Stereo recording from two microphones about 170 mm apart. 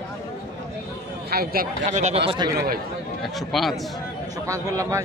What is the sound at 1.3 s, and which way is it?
Speech, 65° right (ahead or behind).